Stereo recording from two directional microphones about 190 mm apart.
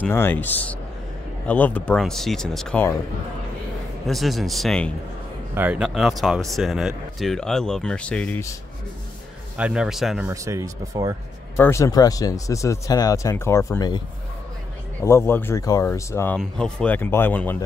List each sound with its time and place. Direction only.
0.0 s speech: 10° left (ahead or behind)
4.1 s speech: centre (ahead or behind)
5.5 s speech: 10° right (ahead or behind); by 8.5 s 10° left (ahead or behind)
9.6 s speech: 5° right (ahead or behind)
10.3 s speech: 15° right (ahead or behind)
11.5 s speech: 15° left (ahead or behind)